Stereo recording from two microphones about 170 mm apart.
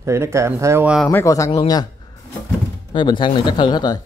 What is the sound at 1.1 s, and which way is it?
Speech, 15° left (ahead or behind).